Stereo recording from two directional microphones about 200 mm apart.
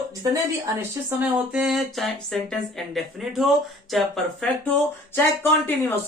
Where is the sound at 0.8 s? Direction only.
5° right (ahead or behind); by 5.7 s 10° left (ahead or behind).